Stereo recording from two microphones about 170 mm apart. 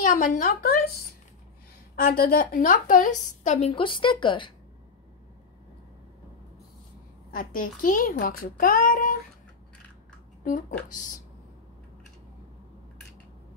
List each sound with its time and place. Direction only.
0.0 s a woman's voice: 45° left (ahead or behind)
2.0 s a woman's voice: 55° left (ahead or behind); by 4.5 s 30° left (ahead or behind)
7.3 s a child's voice: 55° left (ahead or behind)